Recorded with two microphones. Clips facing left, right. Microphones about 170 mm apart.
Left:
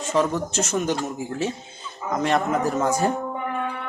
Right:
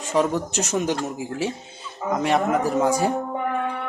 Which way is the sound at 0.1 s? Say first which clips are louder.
Right 1 dB; 15° right (ahead or behind).